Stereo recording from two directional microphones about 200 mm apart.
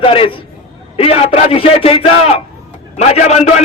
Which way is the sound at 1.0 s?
30° left (ahead or behind).